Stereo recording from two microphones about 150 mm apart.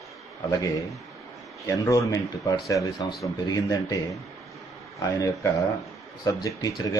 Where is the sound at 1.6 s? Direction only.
20° left (ahead or behind).